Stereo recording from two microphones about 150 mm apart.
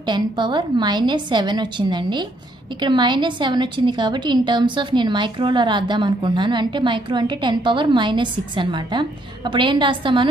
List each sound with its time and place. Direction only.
0.0 s a woman's voice: 30° right (ahead or behind)